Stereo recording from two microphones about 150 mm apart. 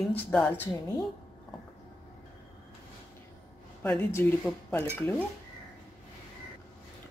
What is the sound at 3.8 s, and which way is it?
Speech, 10° left (ahead or behind).